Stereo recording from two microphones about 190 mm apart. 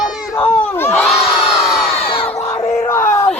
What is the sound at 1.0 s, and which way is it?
Crowd, centre (ahead or behind).